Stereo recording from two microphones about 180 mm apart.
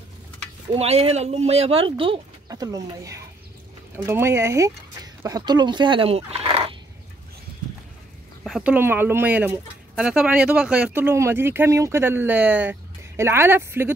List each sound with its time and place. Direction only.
0.7 s speech: 35° right (ahead or behind)
8.5 s speech: centre (ahead or behind)
8.7 s speech: 10° right (ahead or behind)